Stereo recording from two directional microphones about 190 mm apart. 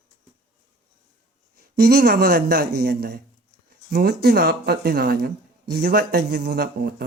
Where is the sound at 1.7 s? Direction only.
55° right (ahead or behind).